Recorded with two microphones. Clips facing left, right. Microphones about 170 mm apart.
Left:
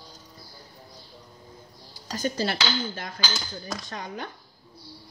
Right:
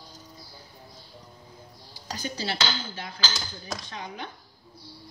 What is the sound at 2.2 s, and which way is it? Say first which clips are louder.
A woman's voice: left 5 dB; 50° left (ahead or behind).